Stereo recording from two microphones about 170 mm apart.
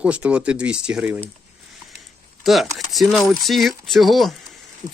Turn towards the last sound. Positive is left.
turn(degrees=-25)  # may be behind; listen again after turning